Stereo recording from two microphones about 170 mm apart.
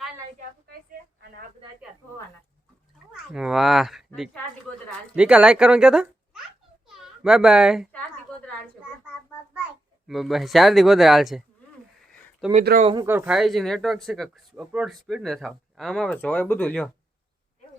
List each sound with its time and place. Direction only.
3.1 s a child's voice: 5° right (ahead or behind)
8.3 s a sound: 5° left (ahead or behind)
10.1 s speech: centre (ahead or behind)
12.8 s speech: 30° right (ahead or behind)
13.1 s speech: 10° right (ahead or behind)